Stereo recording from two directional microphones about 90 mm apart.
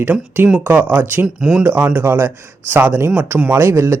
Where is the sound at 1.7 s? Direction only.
20° right (ahead or behind).